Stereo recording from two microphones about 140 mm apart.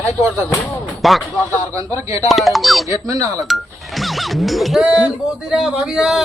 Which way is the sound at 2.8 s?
25° right (ahead or behind).